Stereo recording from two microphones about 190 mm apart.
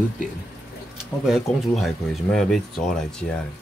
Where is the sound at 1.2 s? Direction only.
Centre (ahead or behind).